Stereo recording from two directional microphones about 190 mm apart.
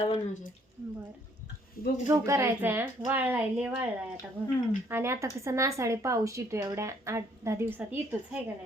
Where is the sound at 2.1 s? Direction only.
15° right (ahead or behind).